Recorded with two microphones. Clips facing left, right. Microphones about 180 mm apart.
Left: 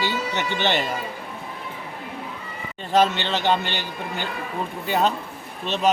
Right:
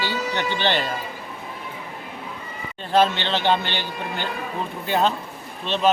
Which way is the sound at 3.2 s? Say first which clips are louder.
Right 1 dB; 10° left (ahead or behind).